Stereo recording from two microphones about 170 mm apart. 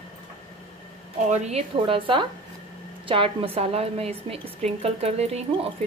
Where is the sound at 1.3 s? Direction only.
40° right (ahead or behind).